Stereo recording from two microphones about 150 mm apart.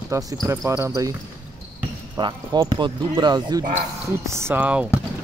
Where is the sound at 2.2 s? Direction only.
30° right (ahead or behind); by 4.9 s 10° right (ahead or behind).